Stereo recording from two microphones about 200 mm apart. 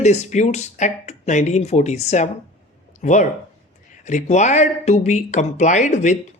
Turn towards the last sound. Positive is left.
turn(degrees=35)  # may be behind; listen again after turning